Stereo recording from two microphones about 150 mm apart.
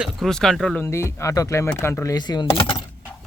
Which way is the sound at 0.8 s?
20° left (ahead or behind).